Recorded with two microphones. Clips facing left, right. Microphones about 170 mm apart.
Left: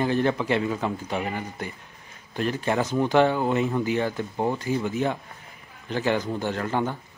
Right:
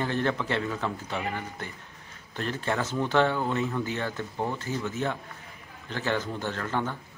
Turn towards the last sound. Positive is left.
turn(degrees=15)  # may be behind; listen again after turning